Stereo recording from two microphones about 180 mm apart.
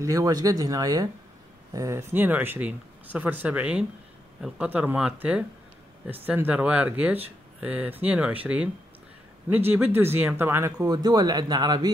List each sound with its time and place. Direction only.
0.0 s speech: 20° right (ahead or behind)
9.7 s speech: 10° right (ahead or behind)